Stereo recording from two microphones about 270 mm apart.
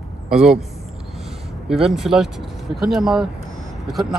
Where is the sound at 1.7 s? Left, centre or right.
Centre.